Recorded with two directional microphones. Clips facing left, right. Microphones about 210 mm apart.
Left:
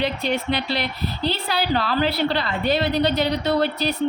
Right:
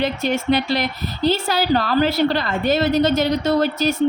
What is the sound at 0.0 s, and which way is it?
A woman's voice, 45° right (ahead or behind).